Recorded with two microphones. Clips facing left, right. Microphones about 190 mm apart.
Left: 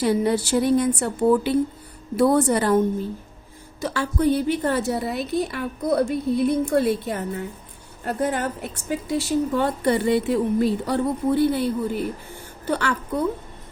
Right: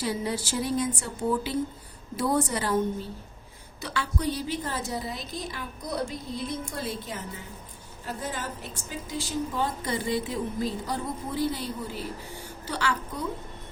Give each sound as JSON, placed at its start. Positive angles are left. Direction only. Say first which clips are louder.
{"t": 0.0, "sound": "a woman's voice", "louder": "left 9 dB", "side_deg": 60}
{"t": 3.8, "sound": "a woman's voice", "louder": "left 8 dB", "side_deg": 45}